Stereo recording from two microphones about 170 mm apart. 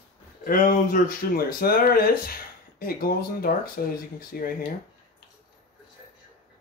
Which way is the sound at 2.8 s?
60° left (ahead or behind).